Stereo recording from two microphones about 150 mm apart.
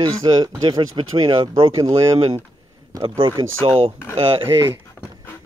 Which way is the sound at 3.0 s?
35° right (ahead or behind).